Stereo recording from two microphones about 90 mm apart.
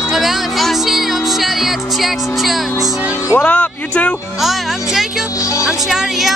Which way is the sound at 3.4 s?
15° left (ahead or behind).